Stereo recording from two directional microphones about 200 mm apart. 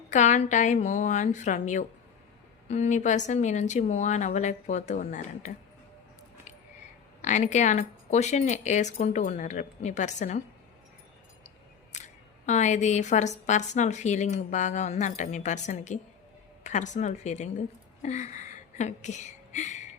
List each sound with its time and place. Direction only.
0.1 s speech: 35° left (ahead or behind)
7.2 s speech: 35° left (ahead or behind)
11.9 s a woman's voice: 35° left (ahead or behind)